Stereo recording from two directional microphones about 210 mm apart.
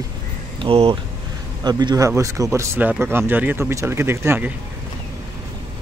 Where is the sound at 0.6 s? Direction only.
25° right (ahead or behind); by 4.5 s 10° right (ahead or behind).